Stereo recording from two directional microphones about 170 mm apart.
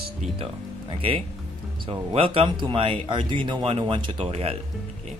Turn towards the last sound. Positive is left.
turn(degrees=-35)  # may be behind; listen again after turning